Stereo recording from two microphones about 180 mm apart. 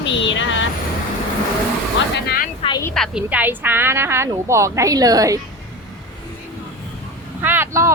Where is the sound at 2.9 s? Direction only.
Centre (ahead or behind).